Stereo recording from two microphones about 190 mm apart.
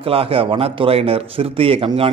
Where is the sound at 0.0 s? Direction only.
30° right (ahead or behind).